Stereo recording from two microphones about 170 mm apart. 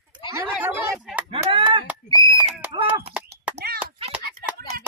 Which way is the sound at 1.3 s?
30° right (ahead or behind).